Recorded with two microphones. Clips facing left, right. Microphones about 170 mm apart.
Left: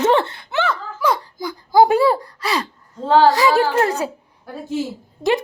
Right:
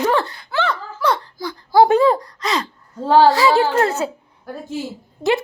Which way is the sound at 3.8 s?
15° left (ahead or behind).